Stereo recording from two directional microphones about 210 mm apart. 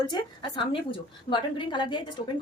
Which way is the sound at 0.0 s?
20° left (ahead or behind).